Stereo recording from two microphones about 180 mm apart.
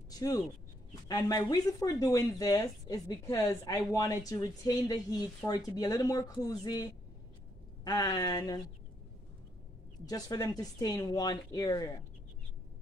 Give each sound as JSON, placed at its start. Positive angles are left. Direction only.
{"t": 0.1, "sound": "a sound", "side_deg": 20}
{"t": 1.0, "sound": "speech", "side_deg": 20}
{"t": 10.0, "sound": "speech", "side_deg": 20}